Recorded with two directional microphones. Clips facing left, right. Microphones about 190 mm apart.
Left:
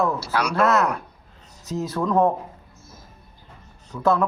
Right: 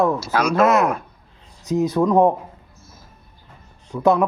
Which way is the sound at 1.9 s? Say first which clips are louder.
Right 3 dB; 15° right (ahead or behind).